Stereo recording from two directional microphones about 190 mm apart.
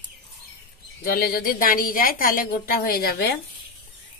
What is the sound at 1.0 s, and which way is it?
A woman's voice, 50° left (ahead or behind).